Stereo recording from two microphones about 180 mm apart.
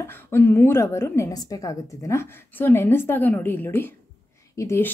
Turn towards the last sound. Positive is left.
turn(degrees=15)  # may be behind; listen again after turning